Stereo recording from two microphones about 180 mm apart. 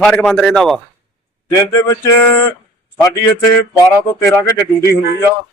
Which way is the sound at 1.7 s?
20° left (ahead or behind).